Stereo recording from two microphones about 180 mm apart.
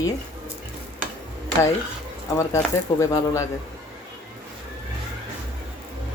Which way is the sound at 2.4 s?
15° left (ahead or behind).